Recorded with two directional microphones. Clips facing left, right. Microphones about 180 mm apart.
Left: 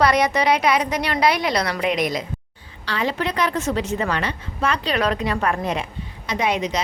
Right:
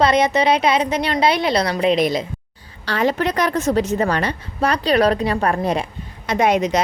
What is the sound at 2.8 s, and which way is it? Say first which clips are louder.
A woman's voice: right 5 dB; 45° right (ahead or behind).